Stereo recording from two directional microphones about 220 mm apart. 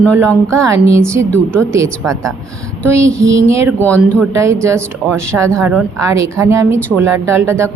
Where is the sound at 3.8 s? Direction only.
5° left (ahead or behind).